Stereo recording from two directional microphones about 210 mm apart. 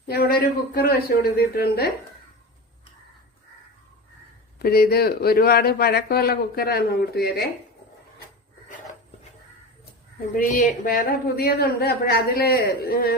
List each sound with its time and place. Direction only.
0.1 s speech: 45° left (ahead or behind)
4.6 s speech: 50° left (ahead or behind)
10.3 s speech: 40° left (ahead or behind)